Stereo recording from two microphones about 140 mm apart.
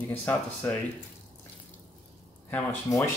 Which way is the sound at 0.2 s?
15° left (ahead or behind).